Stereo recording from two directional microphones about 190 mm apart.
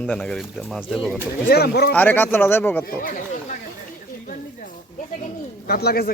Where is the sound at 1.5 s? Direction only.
55° left (ahead or behind).